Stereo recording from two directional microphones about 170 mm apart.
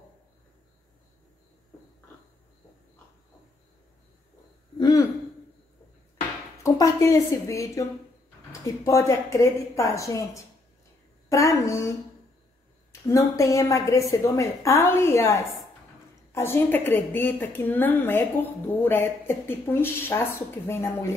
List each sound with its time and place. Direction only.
4.7 s a sound: 25° left (ahead or behind)
6.6 s a woman's voice: 20° left (ahead or behind)
13.1 s a woman's voice: 20° left (ahead or behind)